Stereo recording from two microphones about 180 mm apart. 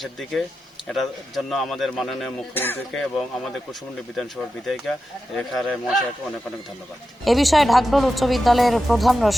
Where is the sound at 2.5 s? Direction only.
10° left (ahead or behind).